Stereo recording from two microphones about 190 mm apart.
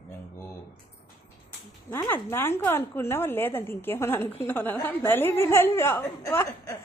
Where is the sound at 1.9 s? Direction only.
15° left (ahead or behind).